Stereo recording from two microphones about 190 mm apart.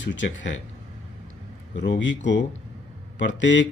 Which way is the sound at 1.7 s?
75° left (ahead or behind).